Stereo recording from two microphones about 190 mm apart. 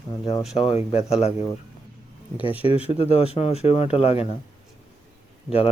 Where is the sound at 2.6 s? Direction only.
30° left (ahead or behind).